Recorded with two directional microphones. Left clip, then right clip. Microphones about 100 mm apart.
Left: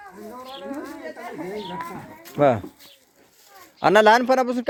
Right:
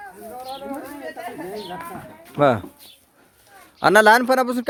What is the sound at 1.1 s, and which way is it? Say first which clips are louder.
Speech: right 1 dB; 20° right (ahead or behind).